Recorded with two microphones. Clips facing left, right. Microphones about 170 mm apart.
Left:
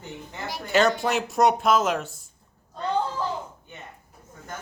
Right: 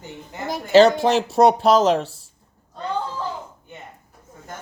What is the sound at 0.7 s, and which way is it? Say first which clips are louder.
Speech: right 8 dB; 30° right (ahead or behind).